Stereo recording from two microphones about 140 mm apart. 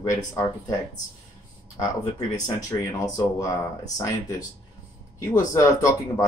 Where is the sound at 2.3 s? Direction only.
25° left (ahead or behind).